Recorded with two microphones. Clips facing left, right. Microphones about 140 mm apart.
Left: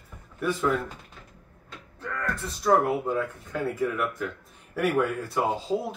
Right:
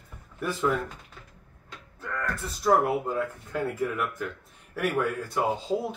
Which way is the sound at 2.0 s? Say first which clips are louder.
Left 1 dB; 5° right (ahead or behind).